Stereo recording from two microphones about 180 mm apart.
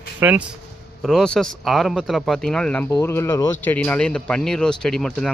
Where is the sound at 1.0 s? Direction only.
5° left (ahead or behind).